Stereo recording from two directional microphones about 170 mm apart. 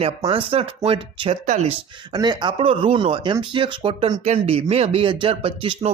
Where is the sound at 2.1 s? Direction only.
25° right (ahead or behind).